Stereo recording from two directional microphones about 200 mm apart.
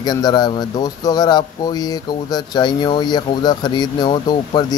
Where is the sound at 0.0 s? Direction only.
20° left (ahead or behind).